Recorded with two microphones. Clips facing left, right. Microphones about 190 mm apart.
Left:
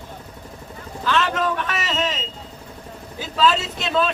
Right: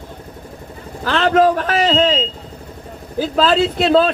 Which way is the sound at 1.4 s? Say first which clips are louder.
Right 10 dB; 35° right (ahead or behind).